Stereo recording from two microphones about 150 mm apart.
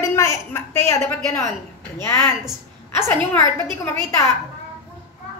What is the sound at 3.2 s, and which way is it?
Speech, 15° left (ahead or behind).